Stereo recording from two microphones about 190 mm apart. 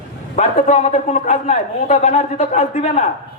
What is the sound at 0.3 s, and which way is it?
A man's voice, 40° left (ahead or behind).